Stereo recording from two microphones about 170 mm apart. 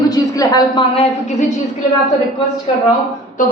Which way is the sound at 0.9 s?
40° left (ahead or behind).